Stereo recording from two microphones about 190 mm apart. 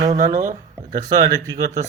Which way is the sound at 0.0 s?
35° right (ahead or behind).